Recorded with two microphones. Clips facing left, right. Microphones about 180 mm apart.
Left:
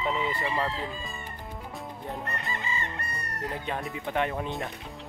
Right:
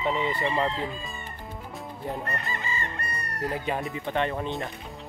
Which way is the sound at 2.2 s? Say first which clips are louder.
Right 2 dB; 20° left (ahead or behind).